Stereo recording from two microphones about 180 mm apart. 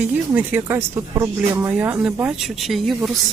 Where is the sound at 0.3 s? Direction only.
10° right (ahead or behind).